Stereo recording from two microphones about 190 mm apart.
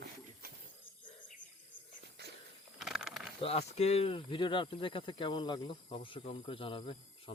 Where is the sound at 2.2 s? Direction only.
60° right (ahead or behind).